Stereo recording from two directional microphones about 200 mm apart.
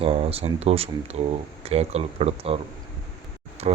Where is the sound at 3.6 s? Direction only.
30° right (ahead or behind).